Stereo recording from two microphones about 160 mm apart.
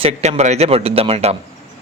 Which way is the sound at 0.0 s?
45° right (ahead or behind).